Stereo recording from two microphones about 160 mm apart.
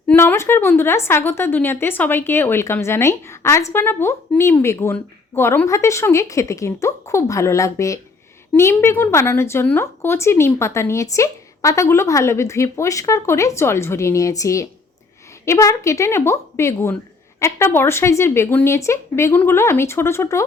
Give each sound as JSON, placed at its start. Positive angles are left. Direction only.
{"t": 0.1, "sound": "a woman's voice", "side_deg": 15}